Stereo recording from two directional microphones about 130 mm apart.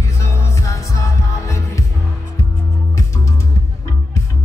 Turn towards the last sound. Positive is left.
turn(degrees=25)  # may be behind; listen again after turning